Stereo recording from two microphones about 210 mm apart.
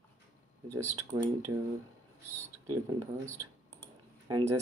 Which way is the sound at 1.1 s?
30° right (ahead or behind).